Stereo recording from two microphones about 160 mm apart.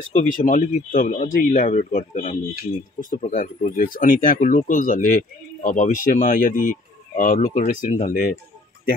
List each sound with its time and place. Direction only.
0.1 s speech: 55° left (ahead or behind)